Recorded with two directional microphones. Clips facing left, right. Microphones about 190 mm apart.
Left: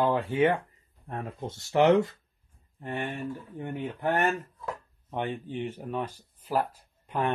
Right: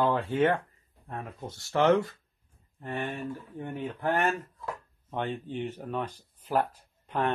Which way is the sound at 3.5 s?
15° left (ahead or behind).